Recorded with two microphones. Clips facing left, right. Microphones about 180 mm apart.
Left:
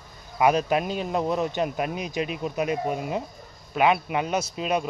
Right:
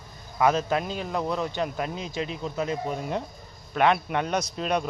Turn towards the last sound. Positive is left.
turn(degrees=5)  # may be behind; listen again after turning